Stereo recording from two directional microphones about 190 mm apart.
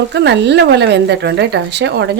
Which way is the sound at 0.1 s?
65° right (ahead or behind).